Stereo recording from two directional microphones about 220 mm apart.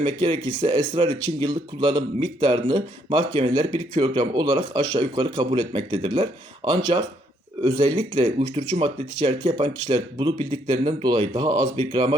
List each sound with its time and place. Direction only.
0.0 s speech: 25° right (ahead or behind)